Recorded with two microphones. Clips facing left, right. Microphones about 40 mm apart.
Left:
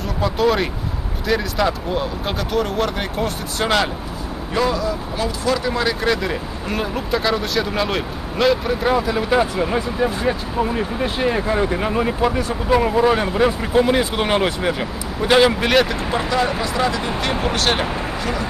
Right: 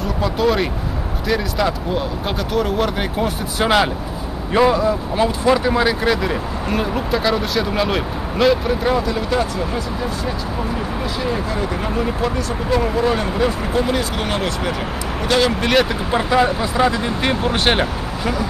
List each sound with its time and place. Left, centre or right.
0.2 s speech: centre
4.6 s speech: right; by 15.5 s centre
15.6 s speech: centre
16.1 s speech: centre